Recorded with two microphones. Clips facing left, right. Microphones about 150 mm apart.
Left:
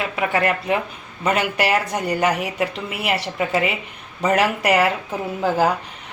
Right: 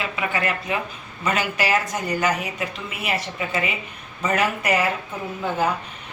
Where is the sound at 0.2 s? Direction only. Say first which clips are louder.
Left 6 dB; 60° left (ahead or behind); by 5.7 s 85° left.